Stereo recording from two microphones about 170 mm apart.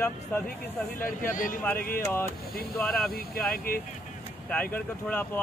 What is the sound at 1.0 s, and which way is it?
Speech, 50° left (ahead or behind).